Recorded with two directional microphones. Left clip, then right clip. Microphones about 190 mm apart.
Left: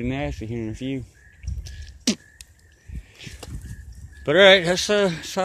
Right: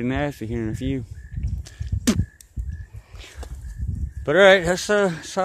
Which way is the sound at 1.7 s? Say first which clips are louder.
Right 1 dB; 30° right (ahead or behind).